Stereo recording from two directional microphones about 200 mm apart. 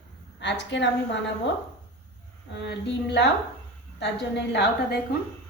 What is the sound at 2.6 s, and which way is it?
A woman's voice, 60° left (ahead or behind).